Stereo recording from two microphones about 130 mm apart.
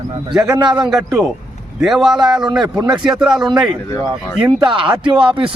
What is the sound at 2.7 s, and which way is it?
Speech, 25° right (ahead or behind).